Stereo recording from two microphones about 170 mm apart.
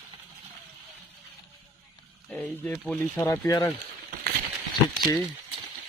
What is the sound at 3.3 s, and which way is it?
Speech, 20° left (ahead or behind).